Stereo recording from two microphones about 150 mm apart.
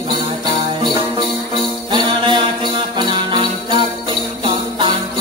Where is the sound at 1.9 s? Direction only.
30° right (ahead or behind).